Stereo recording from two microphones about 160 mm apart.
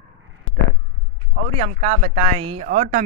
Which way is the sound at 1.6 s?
45° right (ahead or behind).